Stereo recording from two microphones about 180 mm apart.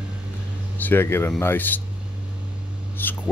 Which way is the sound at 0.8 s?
10° left (ahead or behind).